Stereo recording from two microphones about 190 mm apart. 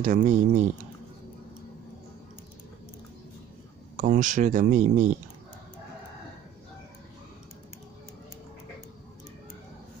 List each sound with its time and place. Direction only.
0.0 s speech: 40° right (ahead or behind)
3.9 s speech: 40° right (ahead or behind)